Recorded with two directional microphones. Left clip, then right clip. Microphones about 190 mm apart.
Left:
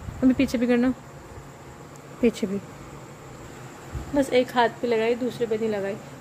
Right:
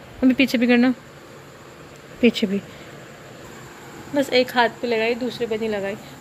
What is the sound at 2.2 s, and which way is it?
Speech, 5° left (ahead or behind).